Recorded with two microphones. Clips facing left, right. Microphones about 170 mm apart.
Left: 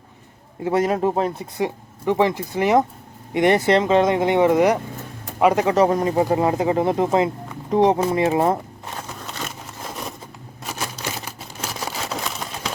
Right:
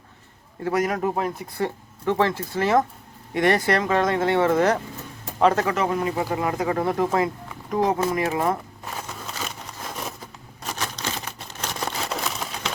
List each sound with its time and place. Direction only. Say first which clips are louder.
0.6 s speech: left 4 dB; 25° left (ahead or behind)
1.6 s speech: left 2 dB; 15° left (ahead or behind)
5.6 s speech: left 6 dB; 35° left (ahead or behind)
10.6 s a sound: left 1 dB; 5° left (ahead or behind)